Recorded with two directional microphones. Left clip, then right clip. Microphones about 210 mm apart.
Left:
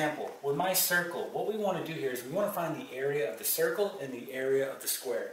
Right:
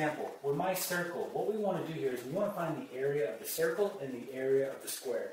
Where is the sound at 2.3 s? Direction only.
20° right (ahead or behind).